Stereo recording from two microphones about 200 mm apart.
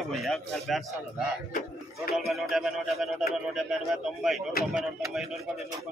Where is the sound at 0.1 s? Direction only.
Centre (ahead or behind).